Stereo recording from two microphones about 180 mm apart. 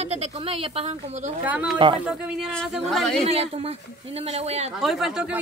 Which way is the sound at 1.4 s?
10° right (ahead or behind).